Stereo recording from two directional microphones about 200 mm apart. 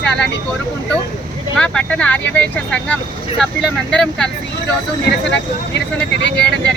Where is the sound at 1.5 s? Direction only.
5° left (ahead or behind).